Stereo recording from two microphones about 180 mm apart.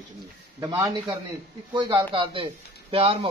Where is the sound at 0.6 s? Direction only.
20° right (ahead or behind).